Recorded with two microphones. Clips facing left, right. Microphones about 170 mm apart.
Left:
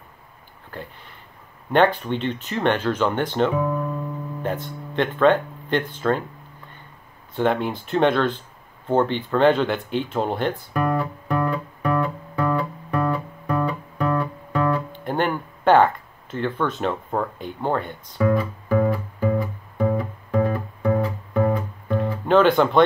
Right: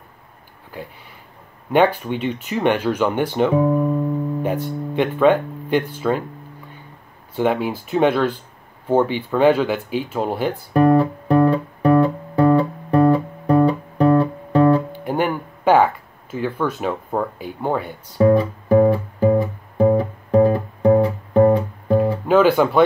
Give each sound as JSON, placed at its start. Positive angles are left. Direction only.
{"t": 0.7, "sound": "speech", "side_deg": -10}
{"t": 3.5, "sound": "speech", "side_deg": -30}
{"t": 4.4, "sound": "speech", "side_deg": -10}
{"t": 7.3, "sound": "speech", "side_deg": -5}
{"t": 10.7, "sound": "guitar", "side_deg": -35}
{"t": 14.9, "sound": "a sound", "side_deg": -10}
{"t": 18.1, "sound": "music", "side_deg": -30}
{"t": 22.3, "sound": "speech", "side_deg": -5}